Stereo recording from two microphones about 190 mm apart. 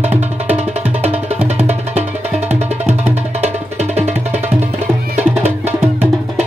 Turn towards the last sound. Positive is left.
turn(degrees=-10)  # may be behind; listen again after turning